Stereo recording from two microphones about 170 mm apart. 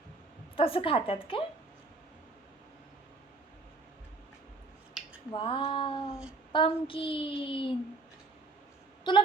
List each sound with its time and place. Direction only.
0.5 s speech: 30° left (ahead or behind)
5.3 s child singing: 30° left (ahead or behind)
6.5 s speech: 30° left (ahead or behind)
9.1 s child singing: 30° left (ahead or behind)